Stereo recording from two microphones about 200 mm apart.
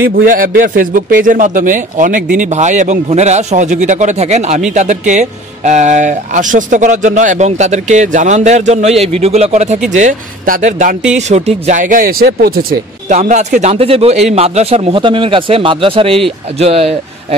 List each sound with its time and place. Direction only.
0.1 s speech: 45° right (ahead or behind)
13.1 s a man's voice: 35° right (ahead or behind)